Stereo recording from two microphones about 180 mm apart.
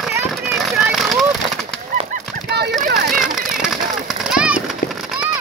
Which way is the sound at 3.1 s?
Centre (ahead or behind).